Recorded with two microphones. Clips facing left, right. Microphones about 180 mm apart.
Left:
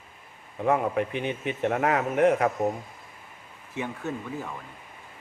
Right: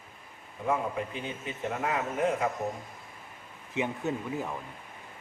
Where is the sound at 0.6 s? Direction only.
65° left (ahead or behind).